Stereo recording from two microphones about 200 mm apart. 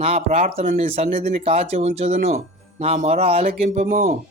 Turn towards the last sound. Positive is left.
turn(degrees=-40)  # may be behind; listen again after turning